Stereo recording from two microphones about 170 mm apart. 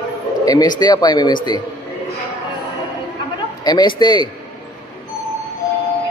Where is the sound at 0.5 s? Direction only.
25° left (ahead or behind).